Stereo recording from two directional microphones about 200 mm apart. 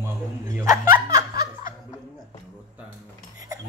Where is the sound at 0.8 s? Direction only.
15° right (ahead or behind).